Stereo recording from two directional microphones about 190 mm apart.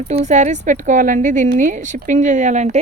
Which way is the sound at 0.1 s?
35° right (ahead or behind).